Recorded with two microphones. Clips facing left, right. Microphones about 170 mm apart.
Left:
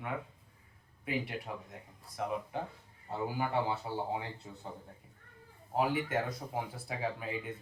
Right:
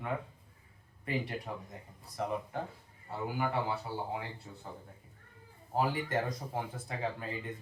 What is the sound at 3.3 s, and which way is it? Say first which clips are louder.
Speech: even; 25° left (ahead or behind).